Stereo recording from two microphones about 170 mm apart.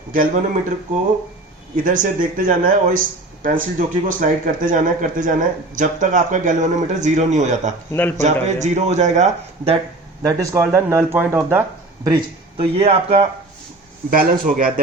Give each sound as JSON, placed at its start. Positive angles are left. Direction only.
{"t": 0.1, "sound": "speech", "side_deg": -55}
{"t": 1.7, "sound": "speech", "side_deg": -50}
{"t": 10.2, "sound": "speech", "side_deg": -20}
{"t": 12.0, "sound": "speech", "side_deg": -30}
{"t": 14.1, "sound": "speech", "side_deg": -55}